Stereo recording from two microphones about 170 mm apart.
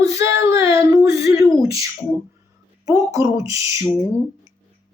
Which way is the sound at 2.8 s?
20° right (ahead or behind).